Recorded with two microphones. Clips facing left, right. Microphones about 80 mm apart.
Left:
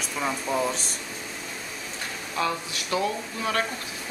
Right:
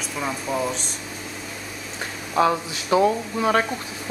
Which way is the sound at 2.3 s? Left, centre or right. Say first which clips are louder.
Right 8 dB; right.